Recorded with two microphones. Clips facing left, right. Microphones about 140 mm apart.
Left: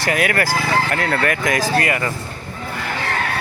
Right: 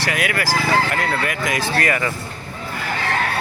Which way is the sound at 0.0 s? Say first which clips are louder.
Left 3 dB; 45° left (ahead or behind).